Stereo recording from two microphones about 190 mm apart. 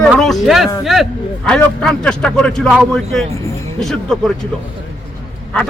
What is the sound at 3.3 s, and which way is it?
Speech, 15° left (ahead or behind).